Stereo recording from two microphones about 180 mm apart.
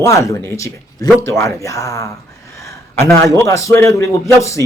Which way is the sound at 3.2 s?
15° left (ahead or behind).